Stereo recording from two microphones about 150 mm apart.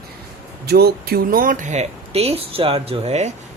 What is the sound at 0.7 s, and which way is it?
Speech, 90° right.